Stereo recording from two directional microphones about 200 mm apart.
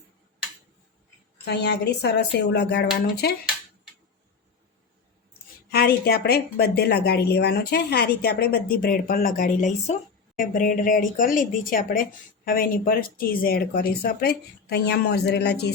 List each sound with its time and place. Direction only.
1.5 s speech: 55° left (ahead or behind)
5.7 s a woman's voice: 50° left (ahead or behind)